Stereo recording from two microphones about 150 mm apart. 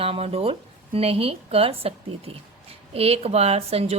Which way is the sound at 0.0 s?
40° right (ahead or behind).